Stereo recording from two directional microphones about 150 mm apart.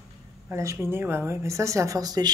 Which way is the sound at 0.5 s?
15° right (ahead or behind).